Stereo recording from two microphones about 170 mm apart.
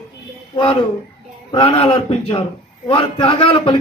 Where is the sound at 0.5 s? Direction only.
30° left (ahead or behind).